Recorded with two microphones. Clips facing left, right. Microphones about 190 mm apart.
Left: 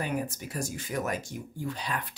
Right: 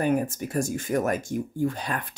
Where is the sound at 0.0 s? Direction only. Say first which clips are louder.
Right 8 dB; 50° right (ahead or behind).